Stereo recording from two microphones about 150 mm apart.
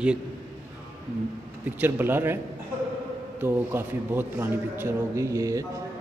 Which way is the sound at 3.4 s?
15° right (ahead or behind).